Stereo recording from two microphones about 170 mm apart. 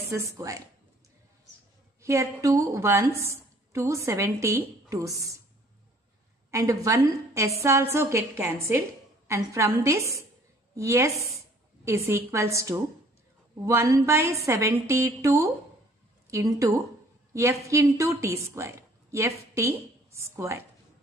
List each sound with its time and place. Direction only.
0.0 s a woman's voice: 20° right (ahead or behind)
2.0 s a woman's voice: 15° right (ahead or behind)
6.5 s a woman's voice: 20° right (ahead or behind)
12.1 s a woman's voice: 15° right (ahead or behind)